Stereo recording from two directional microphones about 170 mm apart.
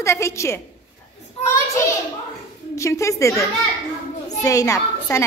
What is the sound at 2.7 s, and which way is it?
A child's voice, 15° left (ahead or behind).